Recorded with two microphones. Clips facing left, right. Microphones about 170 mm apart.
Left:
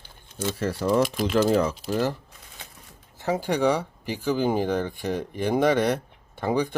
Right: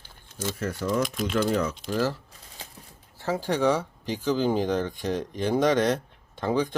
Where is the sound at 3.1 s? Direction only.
15° left (ahead or behind).